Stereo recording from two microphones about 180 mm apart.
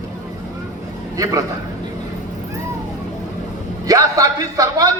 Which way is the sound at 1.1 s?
20° right (ahead or behind).